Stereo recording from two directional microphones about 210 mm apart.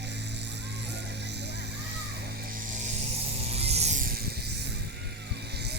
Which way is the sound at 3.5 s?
30° right (ahead or behind).